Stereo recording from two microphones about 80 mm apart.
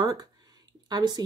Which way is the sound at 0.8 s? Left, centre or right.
Right.